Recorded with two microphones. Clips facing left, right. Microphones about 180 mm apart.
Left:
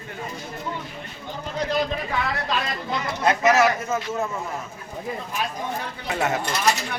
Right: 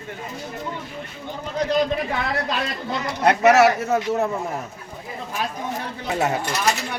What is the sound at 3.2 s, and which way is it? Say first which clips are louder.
Speech: right 4 dB; 65° right (ahead or behind).